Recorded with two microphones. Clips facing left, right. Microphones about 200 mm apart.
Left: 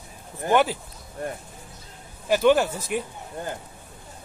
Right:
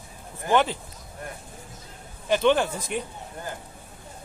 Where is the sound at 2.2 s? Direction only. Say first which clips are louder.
Left 2 dB; 5° left (ahead or behind).